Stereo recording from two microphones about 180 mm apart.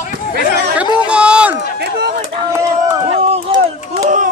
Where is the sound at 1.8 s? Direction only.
65° right (ahead or behind).